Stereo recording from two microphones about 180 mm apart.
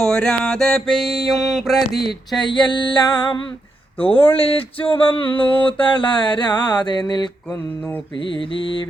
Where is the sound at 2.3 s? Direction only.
25° left (ahead or behind).